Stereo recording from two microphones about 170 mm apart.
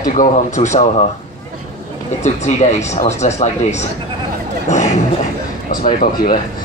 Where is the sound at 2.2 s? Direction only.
40° left (ahead or behind).